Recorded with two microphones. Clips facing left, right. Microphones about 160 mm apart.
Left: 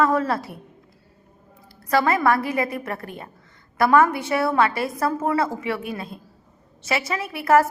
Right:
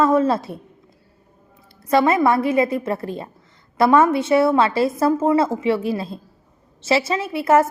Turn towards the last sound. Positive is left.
turn(degrees=-25)  # may be behind; listen again after turning